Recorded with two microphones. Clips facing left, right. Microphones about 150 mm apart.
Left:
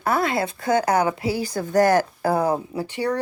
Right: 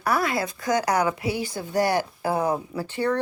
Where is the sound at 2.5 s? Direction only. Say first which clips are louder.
Left 2 dB; 15° left (ahead or behind).